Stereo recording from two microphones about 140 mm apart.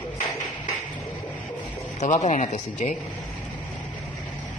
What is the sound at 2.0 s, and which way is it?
Speech, 55° left (ahead or behind).